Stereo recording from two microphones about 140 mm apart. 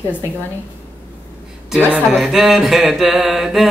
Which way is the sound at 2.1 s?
Centre (ahead or behind).